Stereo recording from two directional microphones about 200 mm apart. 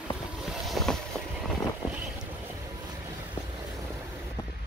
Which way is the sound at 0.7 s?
Centre (ahead or behind).